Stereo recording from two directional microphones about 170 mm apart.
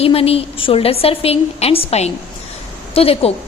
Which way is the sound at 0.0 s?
35° left (ahead or behind).